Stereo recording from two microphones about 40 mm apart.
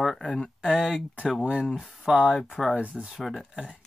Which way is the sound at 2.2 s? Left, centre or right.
Left.